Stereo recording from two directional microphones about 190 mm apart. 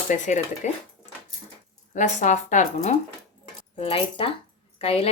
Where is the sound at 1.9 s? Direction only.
40° left (ahead or behind).